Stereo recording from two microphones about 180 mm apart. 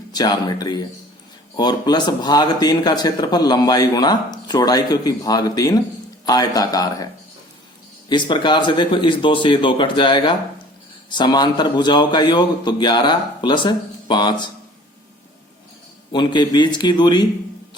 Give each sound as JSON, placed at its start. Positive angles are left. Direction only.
{"t": 0.1, "sound": "speech", "side_deg": 20}
{"t": 8.1, "sound": "speech", "side_deg": 25}
{"t": 16.1, "sound": "speech", "side_deg": 25}